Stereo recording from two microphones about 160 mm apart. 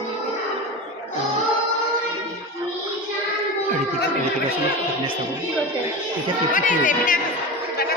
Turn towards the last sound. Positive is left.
turn(degrees=55)  # may be behind; listen again after turning